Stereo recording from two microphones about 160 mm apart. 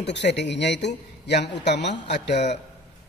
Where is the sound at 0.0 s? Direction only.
90° left.